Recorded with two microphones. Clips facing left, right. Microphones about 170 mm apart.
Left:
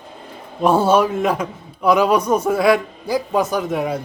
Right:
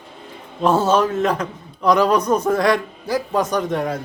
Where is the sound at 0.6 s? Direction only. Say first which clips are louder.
Left 2 dB; 10° left (ahead or behind).